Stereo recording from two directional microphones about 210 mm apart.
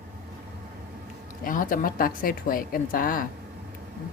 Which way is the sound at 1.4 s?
40° left (ahead or behind).